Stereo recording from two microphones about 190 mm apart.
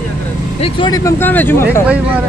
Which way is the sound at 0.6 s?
20° left (ahead or behind).